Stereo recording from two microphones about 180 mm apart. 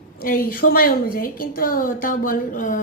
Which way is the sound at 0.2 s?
50° left (ahead or behind).